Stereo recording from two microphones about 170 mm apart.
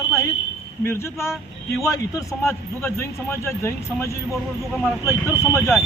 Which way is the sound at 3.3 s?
15° left (ahead or behind).